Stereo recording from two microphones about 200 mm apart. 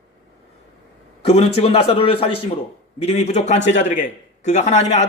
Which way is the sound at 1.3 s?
30° left (ahead or behind).